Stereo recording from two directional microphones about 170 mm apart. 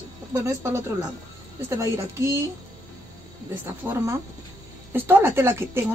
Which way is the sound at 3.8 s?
10° right (ahead or behind).